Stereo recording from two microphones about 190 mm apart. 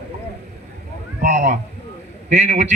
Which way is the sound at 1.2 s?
45° right (ahead or behind).